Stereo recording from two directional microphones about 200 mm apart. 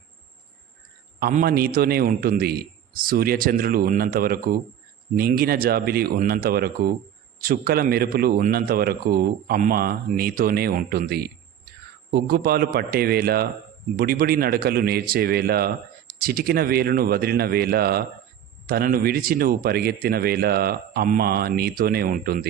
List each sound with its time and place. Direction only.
1.2 s a man's voice: 45° right (ahead or behind)